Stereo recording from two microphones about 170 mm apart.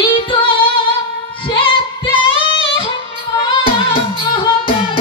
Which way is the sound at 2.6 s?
30° left (ahead or behind).